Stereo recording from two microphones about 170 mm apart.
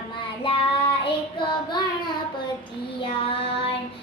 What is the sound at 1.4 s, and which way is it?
Child singing, 25° left (ahead or behind).